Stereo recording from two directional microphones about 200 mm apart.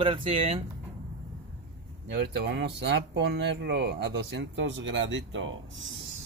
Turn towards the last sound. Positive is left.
turn(degrees=-70)  # may be behind; listen again after turning